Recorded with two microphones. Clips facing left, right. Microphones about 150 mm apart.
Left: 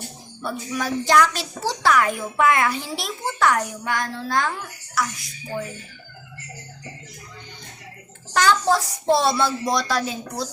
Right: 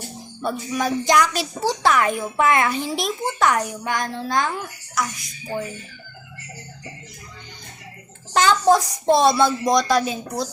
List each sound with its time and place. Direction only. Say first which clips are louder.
0.4 s a woman's voice: right 3 dB; 20° right (ahead or behind)
8.3 s a child's voice: right 3 dB; 20° right (ahead or behind)